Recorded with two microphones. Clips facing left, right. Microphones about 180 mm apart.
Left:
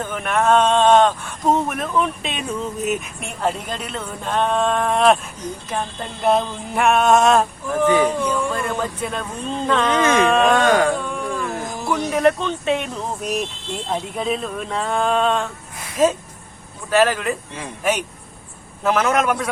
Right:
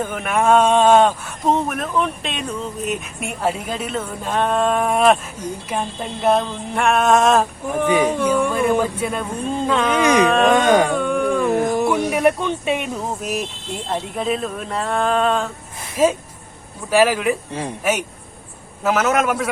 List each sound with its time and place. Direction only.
0.0 s speech: 10° right (ahead or behind)
6.2 s speech: centre (ahead or behind)
7.9 s speech: 15° right (ahead or behind)
10.2 s speech: centre (ahead or behind)
10.5 s music: 20° right (ahead or behind)
10.9 s a sound: 60° right (ahead or behind)
11.9 s speech: 10° right (ahead or behind)
18.8 s speech: 5° right (ahead or behind)